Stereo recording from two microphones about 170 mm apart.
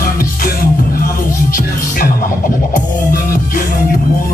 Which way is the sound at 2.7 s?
55° left (ahead or behind).